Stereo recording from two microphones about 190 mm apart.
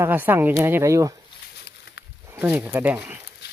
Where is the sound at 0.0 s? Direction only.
10° right (ahead or behind).